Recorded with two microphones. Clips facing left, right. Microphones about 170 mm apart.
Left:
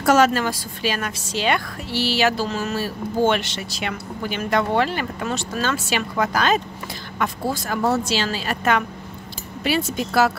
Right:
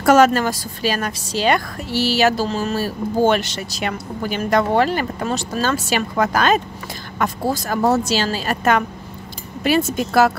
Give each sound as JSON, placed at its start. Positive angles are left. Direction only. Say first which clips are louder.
{"t": 0.0, "sound": "a woman's voice", "louder": "right 4 dB", "side_deg": -50}